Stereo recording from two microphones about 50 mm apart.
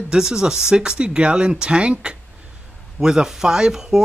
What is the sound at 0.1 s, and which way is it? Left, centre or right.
Speech, centre.